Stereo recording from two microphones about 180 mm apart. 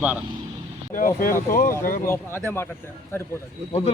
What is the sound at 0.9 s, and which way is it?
Speech, 50° left (ahead or behind).